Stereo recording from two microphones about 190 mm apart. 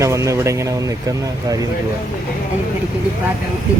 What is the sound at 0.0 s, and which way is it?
Speech, 15° right (ahead or behind).